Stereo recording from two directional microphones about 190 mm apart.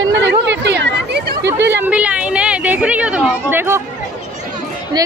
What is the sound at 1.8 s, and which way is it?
A woman's voice, 5° right (ahead or behind).